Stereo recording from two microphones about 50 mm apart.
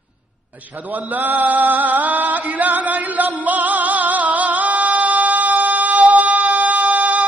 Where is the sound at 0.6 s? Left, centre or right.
Right.